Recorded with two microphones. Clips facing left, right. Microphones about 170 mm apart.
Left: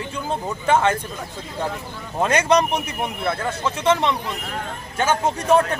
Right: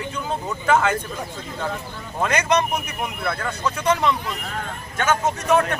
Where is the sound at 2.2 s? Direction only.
30° left (ahead or behind).